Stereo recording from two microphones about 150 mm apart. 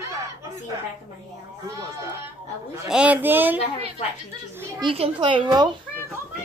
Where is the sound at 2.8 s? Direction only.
5° right (ahead or behind).